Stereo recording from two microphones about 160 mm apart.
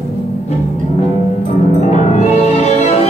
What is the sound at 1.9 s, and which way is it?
Music, 45° left (ahead or behind).